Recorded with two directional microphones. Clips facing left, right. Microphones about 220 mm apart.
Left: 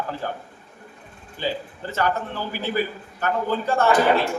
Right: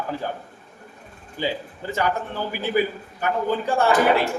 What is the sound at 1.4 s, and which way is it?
A man's voice, 15° right (ahead or behind).